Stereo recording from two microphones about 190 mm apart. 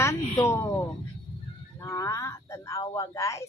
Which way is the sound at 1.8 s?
15° left (ahead or behind).